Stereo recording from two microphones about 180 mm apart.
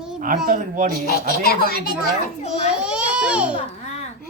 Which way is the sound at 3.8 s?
40° left (ahead or behind).